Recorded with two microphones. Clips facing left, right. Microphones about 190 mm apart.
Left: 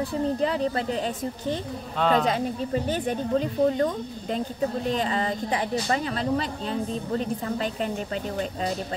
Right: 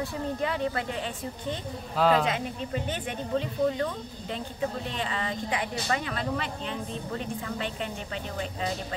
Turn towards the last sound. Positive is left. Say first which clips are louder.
# left 5 dB
turn(degrees=40)  # may be behind; listen again after turning